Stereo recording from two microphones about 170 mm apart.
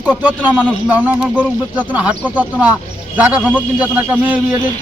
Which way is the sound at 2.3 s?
10° right (ahead or behind).